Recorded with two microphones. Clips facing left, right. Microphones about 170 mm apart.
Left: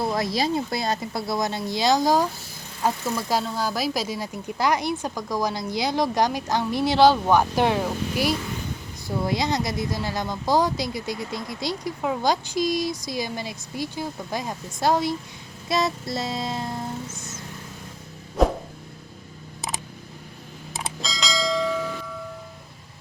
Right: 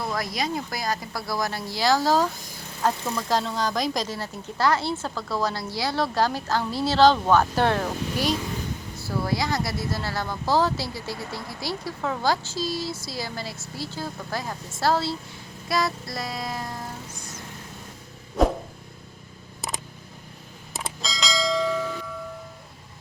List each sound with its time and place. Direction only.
0.0 s speech: 25° left (ahead or behind)
15.7 s music: 25° left (ahead or behind)
20.7 s bell: centre (ahead or behind)